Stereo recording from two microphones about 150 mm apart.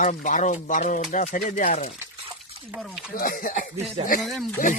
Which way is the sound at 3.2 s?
70° left (ahead or behind).